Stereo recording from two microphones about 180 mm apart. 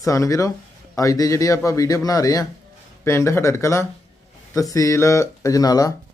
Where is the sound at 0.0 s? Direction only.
15° left (ahead or behind).